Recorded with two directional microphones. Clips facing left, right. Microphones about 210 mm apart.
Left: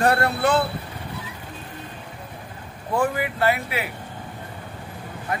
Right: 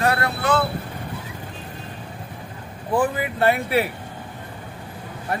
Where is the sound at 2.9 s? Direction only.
15° right (ahead or behind).